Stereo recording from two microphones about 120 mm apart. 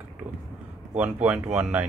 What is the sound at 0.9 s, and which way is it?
Speech, 10° right (ahead or behind).